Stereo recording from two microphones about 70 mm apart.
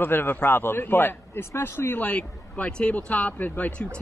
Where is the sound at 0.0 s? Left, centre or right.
Left.